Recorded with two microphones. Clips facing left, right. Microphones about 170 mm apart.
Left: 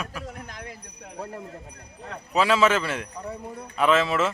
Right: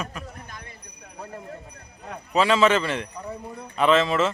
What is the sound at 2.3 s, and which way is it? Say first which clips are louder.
A man's voice: right 1 dB; 5° left (ahead or behind).